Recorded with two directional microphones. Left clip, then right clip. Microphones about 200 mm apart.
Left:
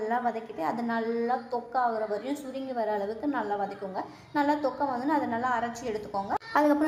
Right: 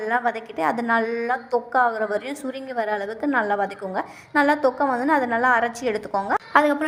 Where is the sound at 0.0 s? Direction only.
30° right (ahead or behind).